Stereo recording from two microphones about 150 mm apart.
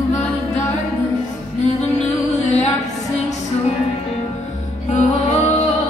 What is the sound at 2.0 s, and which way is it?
Music, 50° left (ahead or behind).